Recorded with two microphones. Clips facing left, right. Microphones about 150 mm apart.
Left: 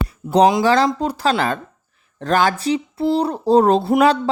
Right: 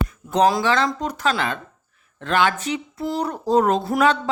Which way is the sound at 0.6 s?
35° left (ahead or behind).